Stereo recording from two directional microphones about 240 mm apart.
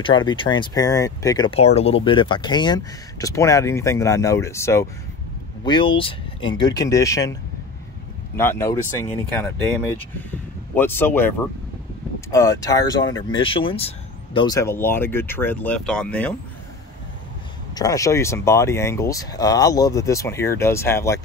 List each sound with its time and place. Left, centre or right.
0.0 s speech: centre
8.4 s speech: centre
10.8 s speech: centre
12.3 s speech: centre
17.7 s speech: centre